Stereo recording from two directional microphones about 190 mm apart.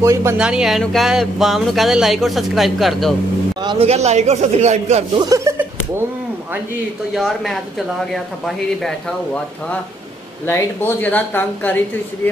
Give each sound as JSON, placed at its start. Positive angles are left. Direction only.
{"t": 0.0, "sound": "speech", "side_deg": -15}
{"t": 3.6, "sound": "speech", "side_deg": -30}
{"t": 5.1, "sound": "speech", "side_deg": -20}
{"t": 7.2, "sound": "speech", "side_deg": 0}